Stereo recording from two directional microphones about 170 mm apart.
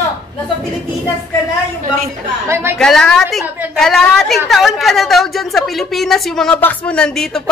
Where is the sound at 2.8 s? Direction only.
5° left (ahead or behind).